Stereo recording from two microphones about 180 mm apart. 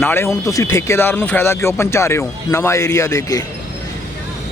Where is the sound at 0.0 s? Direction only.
10° left (ahead or behind).